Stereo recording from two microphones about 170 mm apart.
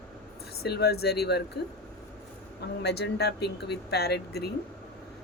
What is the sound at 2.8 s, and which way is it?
Speech, 75° left (ahead or behind).